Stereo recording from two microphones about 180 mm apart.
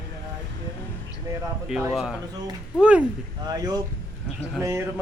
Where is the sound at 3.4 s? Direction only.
20° right (ahead or behind).